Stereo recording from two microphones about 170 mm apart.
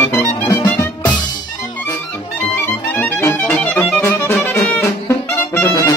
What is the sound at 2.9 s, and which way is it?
Music, 10° left (ahead or behind).